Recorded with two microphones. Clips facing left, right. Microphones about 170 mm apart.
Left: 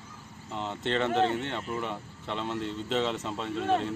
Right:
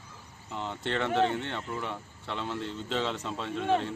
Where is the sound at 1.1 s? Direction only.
Centre (ahead or behind).